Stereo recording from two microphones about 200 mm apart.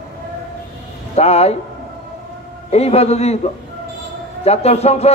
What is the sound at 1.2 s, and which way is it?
Speech, 30° left (ahead or behind).